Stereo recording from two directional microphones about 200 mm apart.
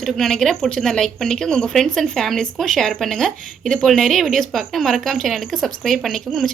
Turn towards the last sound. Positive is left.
turn(degrees=0)  # may be behind; listen again after turning